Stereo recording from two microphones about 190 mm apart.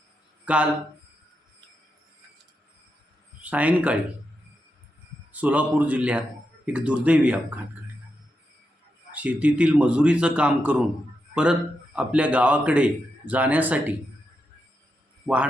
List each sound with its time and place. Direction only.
0.4 s speech: 5° right (ahead or behind)
3.4 s a man's voice: 10° right (ahead or behind)
5.3 s a man's voice: 10° right (ahead or behind)
9.1 s a man's voice: 5° right (ahead or behind)
11.9 s a man's voice: 5° right (ahead or behind)
15.3 s speech: 20° right (ahead or behind)